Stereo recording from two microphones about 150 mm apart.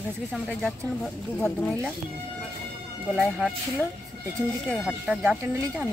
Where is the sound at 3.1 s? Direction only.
Centre (ahead or behind).